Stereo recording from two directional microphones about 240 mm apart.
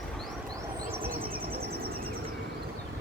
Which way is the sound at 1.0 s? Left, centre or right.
Right.